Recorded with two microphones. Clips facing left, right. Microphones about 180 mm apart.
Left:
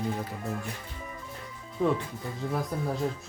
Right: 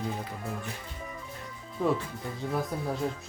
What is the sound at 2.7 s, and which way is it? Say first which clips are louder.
Speech: left 2 dB; centre (ahead or behind).